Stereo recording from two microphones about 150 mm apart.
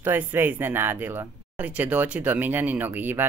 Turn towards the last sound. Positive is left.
turn(degrees=-15)  # may be behind; listen again after turning